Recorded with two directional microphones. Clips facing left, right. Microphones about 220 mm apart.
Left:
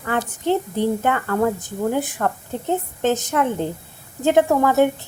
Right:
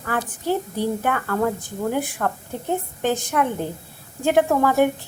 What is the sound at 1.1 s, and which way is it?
A child's voice, 5° left (ahead or behind).